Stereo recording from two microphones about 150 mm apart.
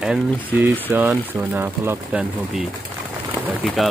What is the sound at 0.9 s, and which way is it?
Speech, 15° right (ahead or behind).